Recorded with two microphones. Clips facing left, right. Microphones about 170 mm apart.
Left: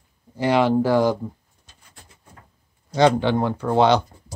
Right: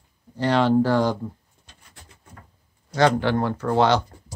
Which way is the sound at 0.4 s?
10° left (ahead or behind).